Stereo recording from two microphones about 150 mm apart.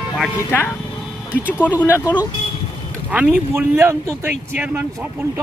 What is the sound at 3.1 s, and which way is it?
Speech, 10° right (ahead or behind).